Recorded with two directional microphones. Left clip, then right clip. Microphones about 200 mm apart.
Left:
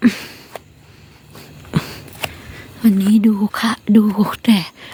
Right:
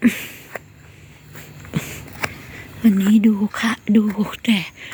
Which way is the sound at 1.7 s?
30° left (ahead or behind).